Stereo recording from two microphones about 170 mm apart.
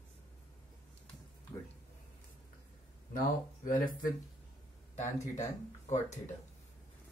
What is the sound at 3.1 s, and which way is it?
Speech, 55° left (ahead or behind).